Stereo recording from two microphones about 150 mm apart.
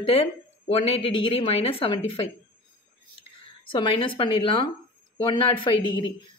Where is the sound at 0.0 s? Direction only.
40° left (ahead or behind).